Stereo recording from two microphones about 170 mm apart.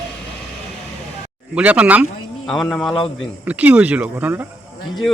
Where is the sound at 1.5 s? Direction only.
10° right (ahead or behind).